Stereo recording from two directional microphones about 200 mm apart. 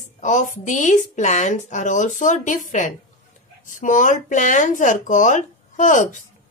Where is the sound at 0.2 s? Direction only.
40° left (ahead or behind).